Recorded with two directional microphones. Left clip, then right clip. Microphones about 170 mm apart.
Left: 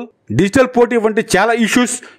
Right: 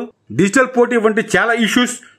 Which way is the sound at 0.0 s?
30° left (ahead or behind).